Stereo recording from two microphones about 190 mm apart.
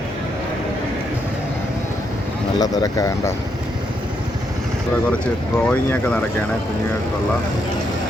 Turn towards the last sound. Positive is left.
turn(degrees=5)  # may be behind; listen again after turning